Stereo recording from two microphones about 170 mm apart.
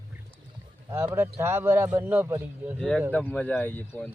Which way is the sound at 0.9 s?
15° right (ahead or behind).